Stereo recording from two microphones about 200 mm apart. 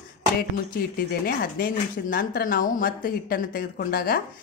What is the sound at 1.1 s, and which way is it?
Speech, 45° left (ahead or behind).